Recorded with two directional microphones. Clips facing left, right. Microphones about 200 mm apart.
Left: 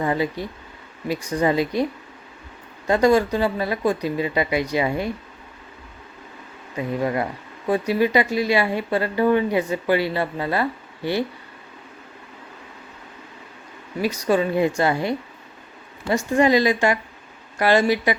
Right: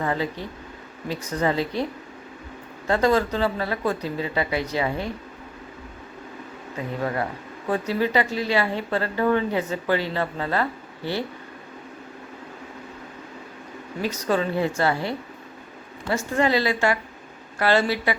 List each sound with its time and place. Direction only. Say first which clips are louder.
0.0 s speech: left 3 dB; 15° left (ahead or behind)
7.0 s speech: left 1 dB; 15° left (ahead or behind)
14.0 s speech: left 4 dB; 10° left (ahead or behind)